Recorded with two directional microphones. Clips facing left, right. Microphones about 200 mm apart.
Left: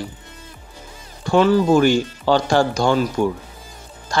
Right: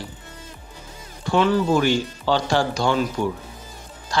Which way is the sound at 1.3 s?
45° left (ahead or behind).